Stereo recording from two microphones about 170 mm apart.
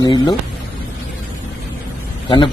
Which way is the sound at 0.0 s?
25° left (ahead or behind).